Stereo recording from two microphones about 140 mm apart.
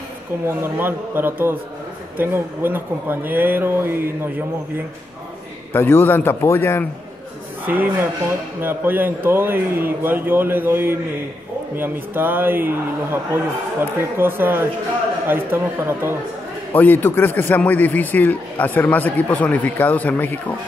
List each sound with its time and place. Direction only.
0.5 s speech: 15° right (ahead or behind)
5.7 s a man's voice: 15° left (ahead or behind)
7.6 s speech: 15° right (ahead or behind)
16.7 s a man's voice: 15° left (ahead or behind)